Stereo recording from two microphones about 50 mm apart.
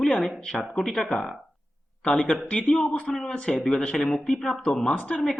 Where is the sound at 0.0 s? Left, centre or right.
Centre.